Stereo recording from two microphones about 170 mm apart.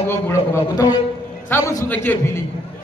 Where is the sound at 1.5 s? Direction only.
15° left (ahead or behind).